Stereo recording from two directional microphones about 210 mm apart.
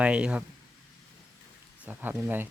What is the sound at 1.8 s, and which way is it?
Speech, 10° right (ahead or behind).